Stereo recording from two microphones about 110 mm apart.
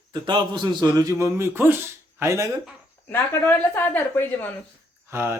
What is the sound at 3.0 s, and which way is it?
Speech, 20° left (ahead or behind).